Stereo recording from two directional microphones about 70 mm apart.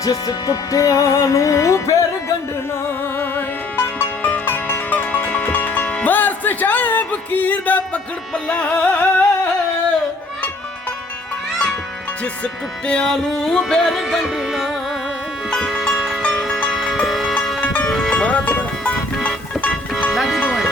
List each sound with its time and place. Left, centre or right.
0.0 s music: left
3.2 s music: left
12.9 s music: centre
13.3 s music: centre
15.4 s music: centre
18.1 s music: centre
20.1 s music: centre